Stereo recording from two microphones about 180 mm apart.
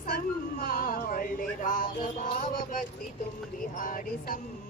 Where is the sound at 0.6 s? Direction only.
50° left (ahead or behind).